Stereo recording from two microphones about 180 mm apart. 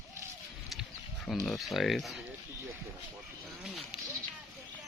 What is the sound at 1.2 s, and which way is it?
Speech, 5° left (ahead or behind).